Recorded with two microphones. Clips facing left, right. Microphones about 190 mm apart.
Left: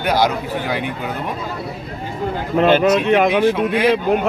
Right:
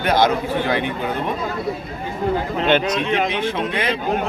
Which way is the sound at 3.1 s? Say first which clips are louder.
Left 4 dB; 55° left (ahead or behind).